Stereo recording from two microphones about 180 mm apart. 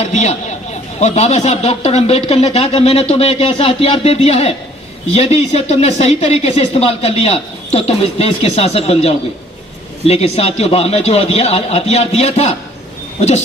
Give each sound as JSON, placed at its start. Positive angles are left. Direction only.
{"t": 0.0, "sound": "a man's voice", "side_deg": 40}